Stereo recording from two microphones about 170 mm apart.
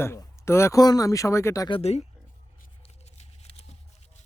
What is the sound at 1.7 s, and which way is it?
Speech, 40° left (ahead or behind).